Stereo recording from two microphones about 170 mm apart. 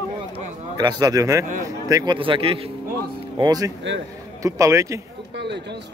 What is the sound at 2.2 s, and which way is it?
Speech, 30° right (ahead or behind).